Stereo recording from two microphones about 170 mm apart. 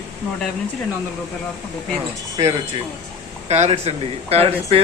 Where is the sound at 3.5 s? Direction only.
35° right (ahead or behind).